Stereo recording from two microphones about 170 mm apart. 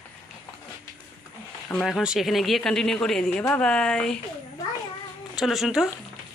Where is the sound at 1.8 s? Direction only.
Centre (ahead or behind).